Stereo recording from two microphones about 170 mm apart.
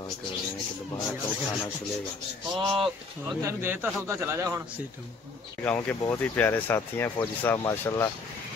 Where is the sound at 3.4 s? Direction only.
15° right (ahead or behind).